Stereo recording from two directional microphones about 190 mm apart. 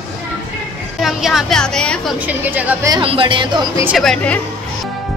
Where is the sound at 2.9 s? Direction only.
30° right (ahead or behind).